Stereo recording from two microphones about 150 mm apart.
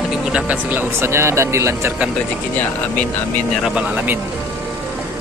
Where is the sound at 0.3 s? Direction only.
10° right (ahead or behind).